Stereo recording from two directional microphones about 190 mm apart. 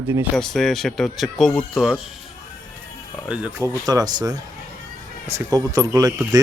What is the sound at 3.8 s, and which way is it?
Speech, 20° right (ahead or behind).